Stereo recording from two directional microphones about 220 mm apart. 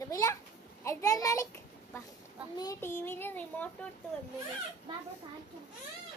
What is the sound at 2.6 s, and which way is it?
A child's voice, 15° left (ahead or behind).